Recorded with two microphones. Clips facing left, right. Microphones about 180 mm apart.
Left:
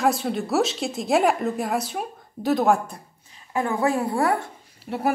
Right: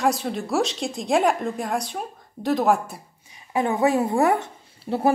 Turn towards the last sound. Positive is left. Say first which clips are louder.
# right 3 dB
turn(degrees=-30)  # may be behind; listen again after turning